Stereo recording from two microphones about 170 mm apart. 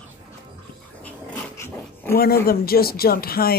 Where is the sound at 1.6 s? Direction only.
15° left (ahead or behind).